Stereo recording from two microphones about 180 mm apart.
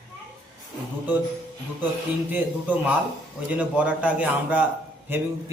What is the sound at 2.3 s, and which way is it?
A man's voice, 10° right (ahead or behind).